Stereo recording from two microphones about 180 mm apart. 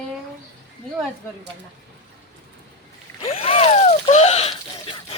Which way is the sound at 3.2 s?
35° left (ahead or behind).